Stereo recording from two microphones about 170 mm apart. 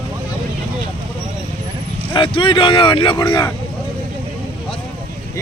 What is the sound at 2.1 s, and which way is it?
Speech, 30° left (ahead or behind).